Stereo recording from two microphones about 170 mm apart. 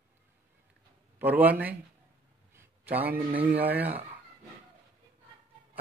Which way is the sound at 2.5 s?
10° right (ahead or behind).